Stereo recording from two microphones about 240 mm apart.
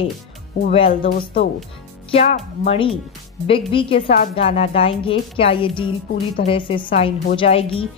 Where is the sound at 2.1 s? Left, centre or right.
Left.